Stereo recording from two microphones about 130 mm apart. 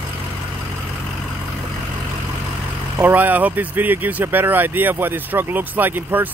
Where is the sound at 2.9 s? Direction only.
15° right (ahead or behind).